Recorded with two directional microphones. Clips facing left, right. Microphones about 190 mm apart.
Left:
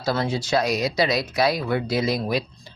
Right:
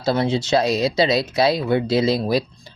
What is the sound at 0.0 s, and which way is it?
Speech, 25° right (ahead or behind).